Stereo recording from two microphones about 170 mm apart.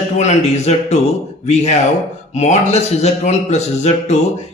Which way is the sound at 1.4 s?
40° left (ahead or behind).